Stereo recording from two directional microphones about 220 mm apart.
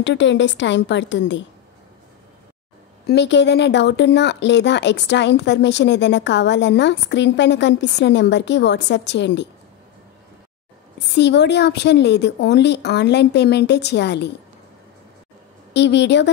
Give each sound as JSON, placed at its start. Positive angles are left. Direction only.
{"t": 0.0, "sound": "a woman's voice", "side_deg": 55}
{"t": 3.1, "sound": "speech", "side_deg": 50}
{"t": 11.1, "sound": "speech", "side_deg": 50}
{"t": 15.7, "sound": "speech", "side_deg": 50}